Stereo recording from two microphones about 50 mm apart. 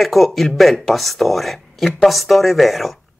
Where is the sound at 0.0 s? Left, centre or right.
Centre.